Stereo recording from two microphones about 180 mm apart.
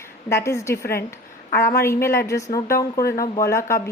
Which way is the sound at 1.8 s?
15° left (ahead or behind).